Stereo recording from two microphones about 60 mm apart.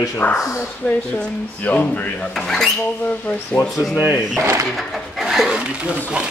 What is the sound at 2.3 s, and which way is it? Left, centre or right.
Speech, centre.